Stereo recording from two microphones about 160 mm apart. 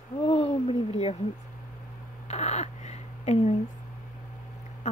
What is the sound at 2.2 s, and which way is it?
Crow, 45° left (ahead or behind).